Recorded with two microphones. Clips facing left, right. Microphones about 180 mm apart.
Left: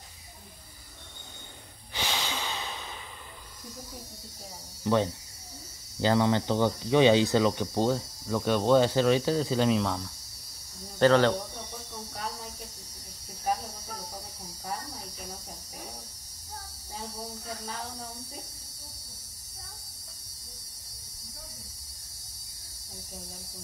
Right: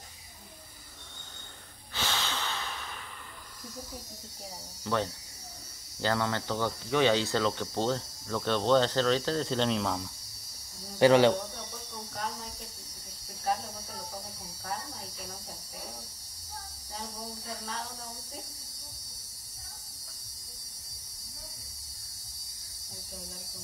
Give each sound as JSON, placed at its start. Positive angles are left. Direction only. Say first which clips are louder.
{"t": 2.0, "sound": "a sound", "louder": "left 1 dB", "side_deg": 15}
{"t": 4.8, "sound": "speech", "louder": "left 5 dB", "side_deg": 20}
{"t": 11.0, "sound": "speech", "louder": "right 1 dB", "side_deg": -15}